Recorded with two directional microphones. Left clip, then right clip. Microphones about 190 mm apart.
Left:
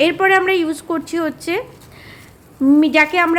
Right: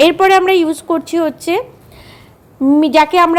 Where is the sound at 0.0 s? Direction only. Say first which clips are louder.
Right 5 dB; 20° right (ahead or behind).